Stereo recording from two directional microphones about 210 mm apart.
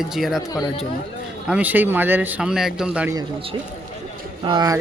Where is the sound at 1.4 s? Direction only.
5° right (ahead or behind).